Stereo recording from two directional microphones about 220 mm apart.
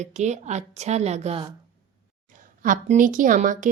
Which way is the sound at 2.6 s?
35° right (ahead or behind).